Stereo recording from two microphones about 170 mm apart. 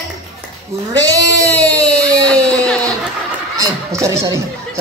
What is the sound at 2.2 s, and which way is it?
Music, 5° left (ahead or behind).